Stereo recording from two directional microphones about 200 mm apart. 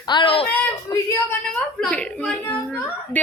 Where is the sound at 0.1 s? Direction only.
25° left (ahead or behind).